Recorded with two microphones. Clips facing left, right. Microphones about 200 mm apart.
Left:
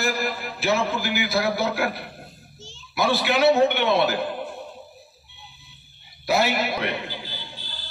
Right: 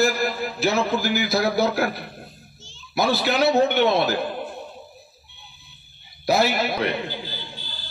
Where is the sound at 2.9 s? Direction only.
40° right (ahead or behind).